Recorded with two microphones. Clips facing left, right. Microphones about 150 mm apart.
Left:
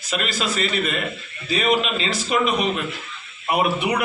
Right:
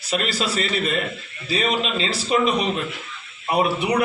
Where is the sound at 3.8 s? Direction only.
35° right (ahead or behind).